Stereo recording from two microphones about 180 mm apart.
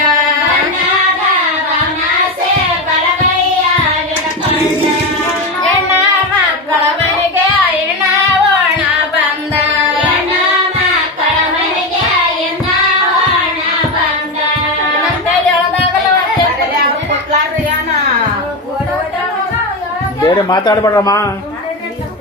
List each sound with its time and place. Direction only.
20.2 s a man's voice: 25° left (ahead or behind)